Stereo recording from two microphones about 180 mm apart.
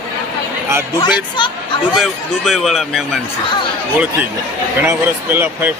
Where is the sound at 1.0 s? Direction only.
25° left (ahead or behind).